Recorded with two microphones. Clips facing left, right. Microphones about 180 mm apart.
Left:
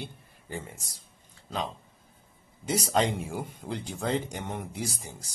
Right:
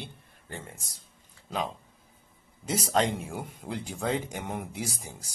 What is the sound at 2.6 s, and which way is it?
Speech, centre (ahead or behind).